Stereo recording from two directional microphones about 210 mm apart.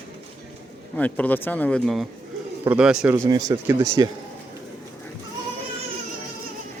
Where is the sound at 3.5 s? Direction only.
20° right (ahead or behind).